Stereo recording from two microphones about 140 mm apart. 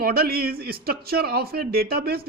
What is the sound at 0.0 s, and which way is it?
Speech, 90° right.